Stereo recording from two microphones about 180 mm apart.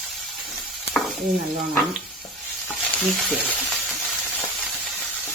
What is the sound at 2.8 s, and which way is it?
Frying, centre (ahead or behind).